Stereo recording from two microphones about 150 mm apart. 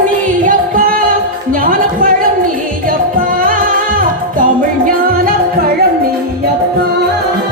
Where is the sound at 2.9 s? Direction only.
65° right (ahead or behind).